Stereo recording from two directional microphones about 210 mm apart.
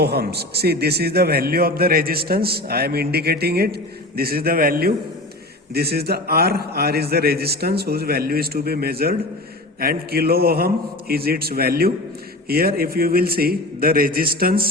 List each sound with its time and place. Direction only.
0.0 s a man's voice: 50° right (ahead or behind)